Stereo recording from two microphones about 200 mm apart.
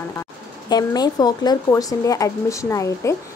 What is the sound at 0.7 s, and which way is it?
Speech, 20° left (ahead or behind).